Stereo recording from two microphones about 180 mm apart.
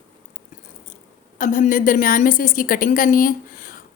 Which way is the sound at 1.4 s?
45° left (ahead or behind).